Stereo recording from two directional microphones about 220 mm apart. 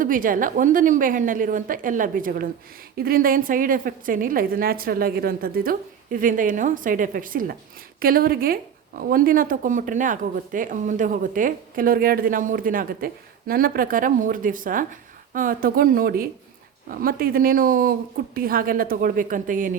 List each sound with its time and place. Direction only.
0.0 s a woman's voice: 40° right (ahead or behind)